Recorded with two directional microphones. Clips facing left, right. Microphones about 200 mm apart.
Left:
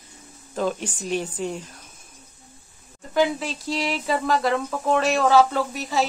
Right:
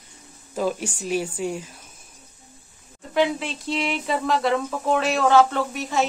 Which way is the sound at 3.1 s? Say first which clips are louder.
Even; centre (ahead or behind).